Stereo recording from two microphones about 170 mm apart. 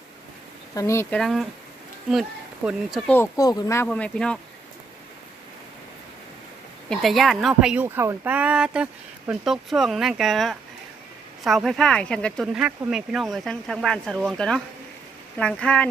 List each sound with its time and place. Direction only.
0.7 s speech: 15° left (ahead or behind)
1.2 s speech: centre (ahead or behind)
3.1 s speech: 15° left (ahead or behind)
3.8 s speech: 5° left (ahead or behind)
6.9 s speech: centre (ahead or behind)
12.5 s speech: 5° right (ahead or behind)